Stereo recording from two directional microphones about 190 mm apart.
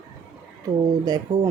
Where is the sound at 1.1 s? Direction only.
20° right (ahead or behind).